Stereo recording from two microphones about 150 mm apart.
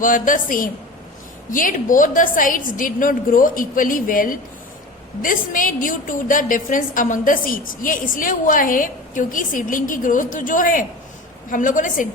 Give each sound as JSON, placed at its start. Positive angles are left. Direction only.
{"t": 0.0, "sound": "a woman's voice", "side_deg": 60}